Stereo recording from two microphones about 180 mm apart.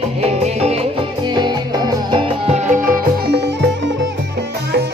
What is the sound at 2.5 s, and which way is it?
Music, 45° right (ahead or behind).